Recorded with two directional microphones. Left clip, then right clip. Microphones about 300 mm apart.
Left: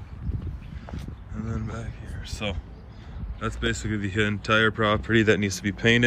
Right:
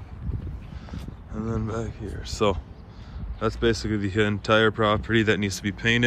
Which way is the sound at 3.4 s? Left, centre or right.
Centre.